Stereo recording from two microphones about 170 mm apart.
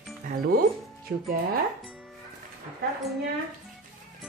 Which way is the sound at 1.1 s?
90° right.